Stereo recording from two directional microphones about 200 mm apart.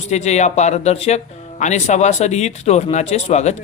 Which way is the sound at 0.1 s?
35° left (ahead or behind).